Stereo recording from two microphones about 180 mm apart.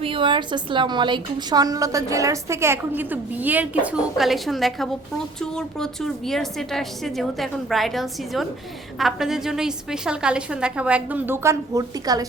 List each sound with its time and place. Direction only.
0.0 s a woman's voice: 30° right (ahead or behind)